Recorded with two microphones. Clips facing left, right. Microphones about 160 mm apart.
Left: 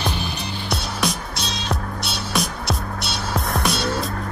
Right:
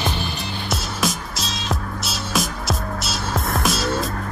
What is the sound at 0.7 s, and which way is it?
Music, centre (ahead or behind).